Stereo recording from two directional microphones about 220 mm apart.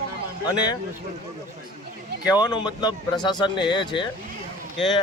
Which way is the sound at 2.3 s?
20° left (ahead or behind).